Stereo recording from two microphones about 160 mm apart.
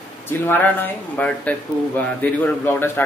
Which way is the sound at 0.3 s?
10° left (ahead or behind).